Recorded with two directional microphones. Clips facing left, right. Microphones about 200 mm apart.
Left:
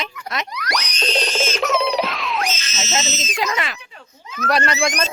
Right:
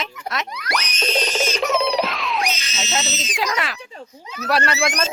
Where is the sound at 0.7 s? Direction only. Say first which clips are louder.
Even; 5° right (ahead or behind).